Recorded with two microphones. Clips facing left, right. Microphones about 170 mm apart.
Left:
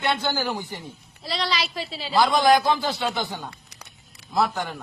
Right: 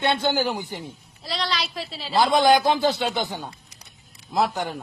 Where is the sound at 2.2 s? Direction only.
25° right (ahead or behind).